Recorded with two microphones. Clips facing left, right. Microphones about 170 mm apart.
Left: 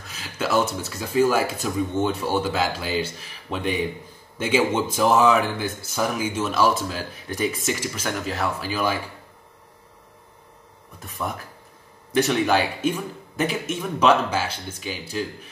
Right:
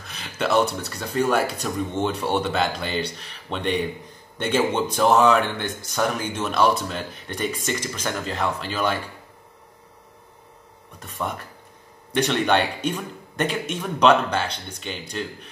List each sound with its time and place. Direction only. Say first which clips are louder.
0.0 s speech: right 1 dB; centre (ahead or behind)
11.1 s speech: right 1 dB; 5° left (ahead or behind)